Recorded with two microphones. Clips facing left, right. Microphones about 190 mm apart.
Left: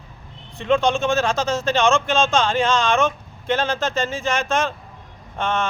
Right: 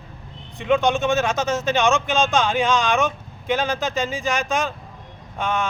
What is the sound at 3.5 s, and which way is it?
Speech, centre (ahead or behind).